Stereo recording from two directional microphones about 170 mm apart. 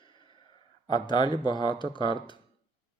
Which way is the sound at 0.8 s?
25° left (ahead or behind).